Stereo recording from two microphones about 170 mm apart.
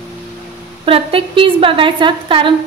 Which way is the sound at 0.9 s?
35° right (ahead or behind).